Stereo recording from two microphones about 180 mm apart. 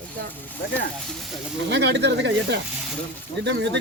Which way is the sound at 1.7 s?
70° right (ahead or behind).